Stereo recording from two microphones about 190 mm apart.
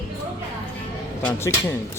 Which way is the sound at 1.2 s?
5° left (ahead or behind).